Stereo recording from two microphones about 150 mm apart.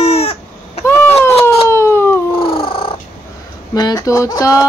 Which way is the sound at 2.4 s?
35° left (ahead or behind).